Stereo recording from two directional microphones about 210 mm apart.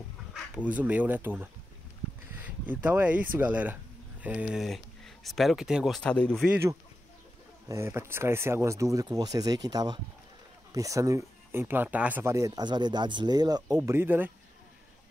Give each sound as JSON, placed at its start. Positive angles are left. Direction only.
{"t": 0.3, "sound": "speech", "side_deg": -5}
{"t": 2.6, "sound": "speech", "side_deg": -10}
{"t": 6.5, "sound": "speech", "side_deg": -15}